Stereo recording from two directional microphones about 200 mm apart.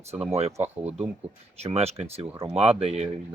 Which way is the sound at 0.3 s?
30° right (ahead or behind).